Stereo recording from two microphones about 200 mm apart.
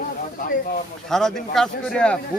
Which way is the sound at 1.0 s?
Centre (ahead or behind).